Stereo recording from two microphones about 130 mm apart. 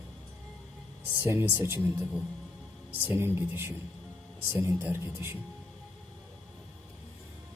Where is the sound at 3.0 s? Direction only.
15° right (ahead or behind).